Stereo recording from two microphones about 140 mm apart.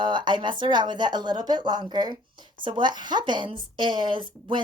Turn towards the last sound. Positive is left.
turn(degrees=-35)  # may be behind; listen again after turning